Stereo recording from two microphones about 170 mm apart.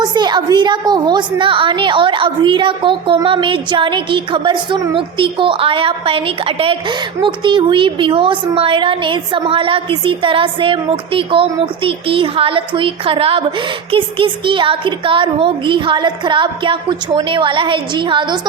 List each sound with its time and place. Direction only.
0.0 s a woman's voice: 25° right (ahead or behind)